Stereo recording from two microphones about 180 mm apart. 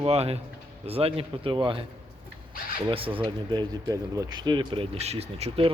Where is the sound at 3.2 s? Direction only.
25° right (ahead or behind).